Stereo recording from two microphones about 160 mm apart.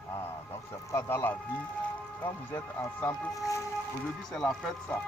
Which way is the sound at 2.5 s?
15° left (ahead or behind).